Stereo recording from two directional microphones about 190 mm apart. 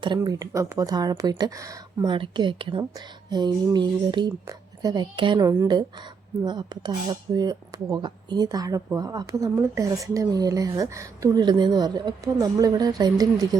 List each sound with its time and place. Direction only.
0.0 s speech: 20° right (ahead or behind)